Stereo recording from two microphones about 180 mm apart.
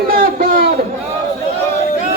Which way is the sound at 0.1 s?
55° right (ahead or behind).